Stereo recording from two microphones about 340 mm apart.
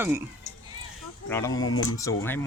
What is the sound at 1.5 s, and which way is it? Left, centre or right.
Speech, left.